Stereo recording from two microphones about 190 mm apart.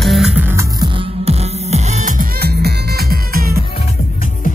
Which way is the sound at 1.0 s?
30° right (ahead or behind).